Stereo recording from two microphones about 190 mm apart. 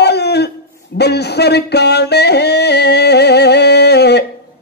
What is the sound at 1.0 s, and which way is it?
Music, 60° left (ahead or behind).